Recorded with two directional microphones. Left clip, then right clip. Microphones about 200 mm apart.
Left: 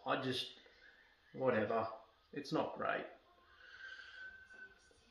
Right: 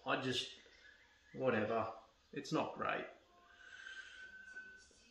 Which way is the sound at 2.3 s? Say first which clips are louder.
Even; 15° right (ahead or behind).